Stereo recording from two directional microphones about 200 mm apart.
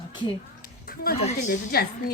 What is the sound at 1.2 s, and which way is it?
Speech, 35° left (ahead or behind).